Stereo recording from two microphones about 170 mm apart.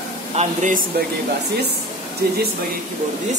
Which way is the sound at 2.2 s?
65° right (ahead or behind).